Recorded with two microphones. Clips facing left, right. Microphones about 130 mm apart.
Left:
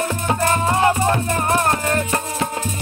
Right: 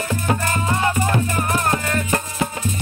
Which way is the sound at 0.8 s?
35° left (ahead or behind).